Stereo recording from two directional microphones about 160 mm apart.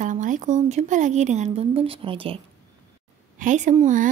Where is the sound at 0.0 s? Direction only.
50° right (ahead or behind); by 2.3 s 35° right (ahead or behind).